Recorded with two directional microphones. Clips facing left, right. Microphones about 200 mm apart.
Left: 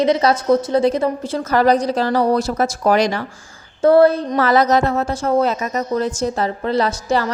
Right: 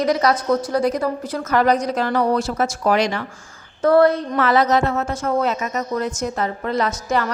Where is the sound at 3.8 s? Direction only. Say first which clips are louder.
Left 3 dB; 30° left (ahead or behind).